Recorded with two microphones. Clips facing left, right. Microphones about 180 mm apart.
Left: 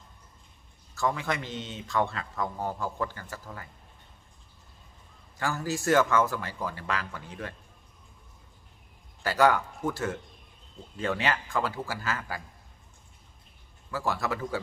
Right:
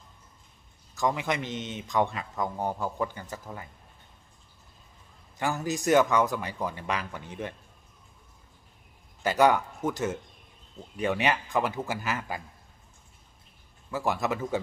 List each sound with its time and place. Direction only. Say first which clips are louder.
0.9 s a man's voice: right 1 dB; 15° right (ahead or behind)
5.4 s a man's voice: right 1 dB; 20° right (ahead or behind)
9.2 s a man's voice: right 1 dB; 20° right (ahead or behind)
13.8 s a man's voice: right 2 dB; 20° right (ahead or behind)